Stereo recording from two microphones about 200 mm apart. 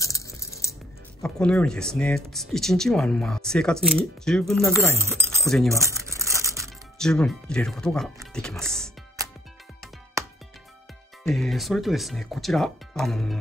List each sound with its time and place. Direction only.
0.0 s coin: 15° left (ahead or behind)
1.2 s speech: 5° left (ahead or behind)
4.9 s speech: 15° right (ahead or behind)
5.7 s crumpling: 15° right (ahead or behind)
7.0 s speech: 5° left (ahead or behind)
11.2 s speech: centre (ahead or behind)